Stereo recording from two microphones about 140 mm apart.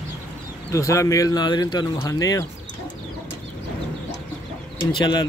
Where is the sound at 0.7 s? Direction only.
20° left (ahead or behind).